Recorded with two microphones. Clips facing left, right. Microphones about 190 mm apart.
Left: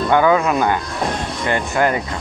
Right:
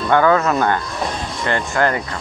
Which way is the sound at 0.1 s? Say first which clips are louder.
Right 1 dB; 15° left (ahead or behind).